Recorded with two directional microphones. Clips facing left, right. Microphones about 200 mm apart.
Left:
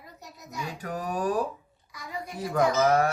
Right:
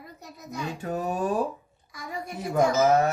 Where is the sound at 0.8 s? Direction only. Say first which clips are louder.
Right 2 dB; 25° right (ahead or behind).